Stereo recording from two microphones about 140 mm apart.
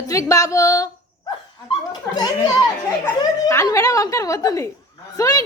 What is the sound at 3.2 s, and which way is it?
Speech, 25° left (ahead or behind).